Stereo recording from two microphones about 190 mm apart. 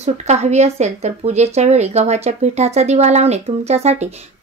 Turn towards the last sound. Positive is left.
turn(degrees=-35)  # may be behind; listen again after turning